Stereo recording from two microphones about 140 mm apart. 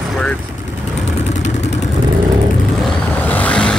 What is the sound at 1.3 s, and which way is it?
Vehicle, 55° left (ahead or behind).